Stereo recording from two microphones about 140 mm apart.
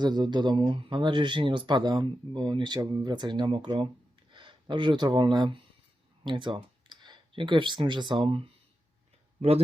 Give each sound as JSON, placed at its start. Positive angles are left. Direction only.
{"t": 0.0, "sound": "speech", "side_deg": -30}